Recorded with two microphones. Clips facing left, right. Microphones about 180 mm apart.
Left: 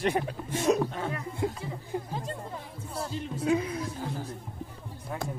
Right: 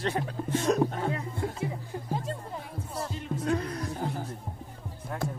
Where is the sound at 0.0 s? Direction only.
15° left (ahead or behind).